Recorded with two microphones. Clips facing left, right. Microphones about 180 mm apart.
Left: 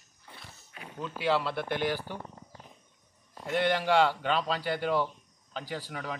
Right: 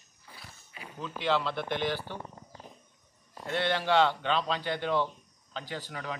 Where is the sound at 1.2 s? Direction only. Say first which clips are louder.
Left 1 dB; 10° left (ahead or behind).